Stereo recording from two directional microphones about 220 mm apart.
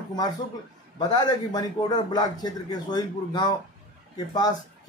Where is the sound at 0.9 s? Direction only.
20° left (ahead or behind).